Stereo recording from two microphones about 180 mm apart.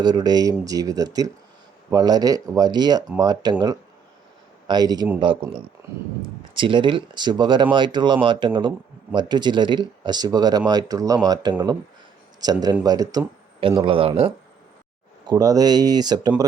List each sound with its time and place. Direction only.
0.0 s speech: 20° right (ahead or behind)
4.7 s speech: 20° right (ahead or behind)